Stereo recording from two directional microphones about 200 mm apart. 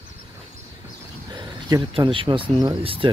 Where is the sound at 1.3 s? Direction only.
20° right (ahead or behind).